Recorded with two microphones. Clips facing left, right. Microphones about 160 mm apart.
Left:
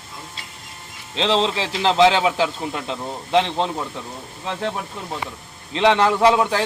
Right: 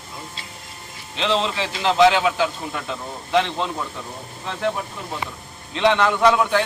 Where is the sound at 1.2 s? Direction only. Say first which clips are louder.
Left 2 dB; 30° left (ahead or behind).